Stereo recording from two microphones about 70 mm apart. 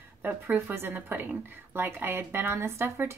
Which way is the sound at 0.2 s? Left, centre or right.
Right.